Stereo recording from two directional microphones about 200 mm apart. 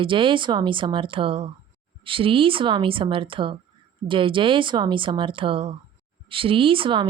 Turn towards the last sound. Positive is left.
turn(degrees=-25)  # may be behind; listen again after turning